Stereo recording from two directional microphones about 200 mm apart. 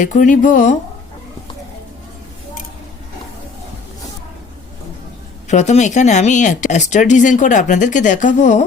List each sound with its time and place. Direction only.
0.0 s speech: 40° left (ahead or behind)
5.5 s speech: 35° left (ahead or behind)